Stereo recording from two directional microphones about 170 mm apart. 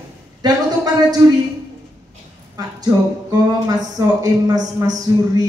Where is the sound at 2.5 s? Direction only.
20° right (ahead or behind).